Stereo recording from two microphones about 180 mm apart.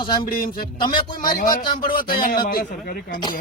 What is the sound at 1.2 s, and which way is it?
A man's voice, 50° left (ahead or behind).